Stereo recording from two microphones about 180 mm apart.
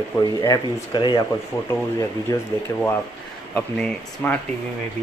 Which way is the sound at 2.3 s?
20° left (ahead or behind).